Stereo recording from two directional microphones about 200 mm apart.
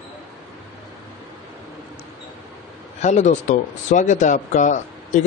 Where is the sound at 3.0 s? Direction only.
35° left (ahead or behind).